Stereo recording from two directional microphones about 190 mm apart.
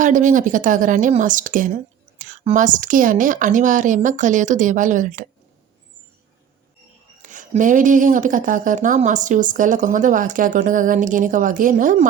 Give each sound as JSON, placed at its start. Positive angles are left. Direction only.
{"t": 0.0, "sound": "a woman's voice", "side_deg": -40}
{"t": 7.2, "sound": "speech", "side_deg": -40}